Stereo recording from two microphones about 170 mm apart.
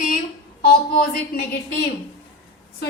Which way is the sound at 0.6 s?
60° left (ahead or behind).